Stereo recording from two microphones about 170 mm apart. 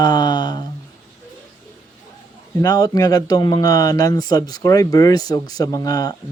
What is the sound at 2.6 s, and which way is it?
Speech, 20° left (ahead or behind).